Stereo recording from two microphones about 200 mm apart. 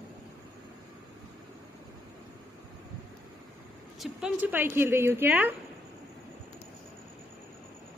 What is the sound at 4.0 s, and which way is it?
Speech, 5° right (ahead or behind).